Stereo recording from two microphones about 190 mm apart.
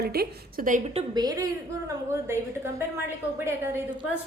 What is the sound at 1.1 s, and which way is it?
Speech, 20° right (ahead or behind).